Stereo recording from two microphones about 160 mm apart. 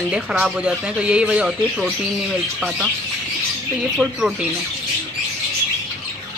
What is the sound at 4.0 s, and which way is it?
Speech, 5° right (ahead or behind).